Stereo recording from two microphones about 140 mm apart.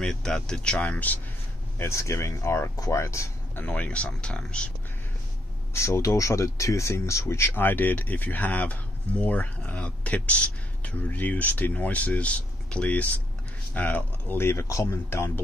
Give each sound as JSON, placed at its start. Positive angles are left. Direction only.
{"t": 0.0, "sound": "speech", "side_deg": 5}
{"t": 3.6, "sound": "speech", "side_deg": 10}
{"t": 5.7, "sound": "speech", "side_deg": 20}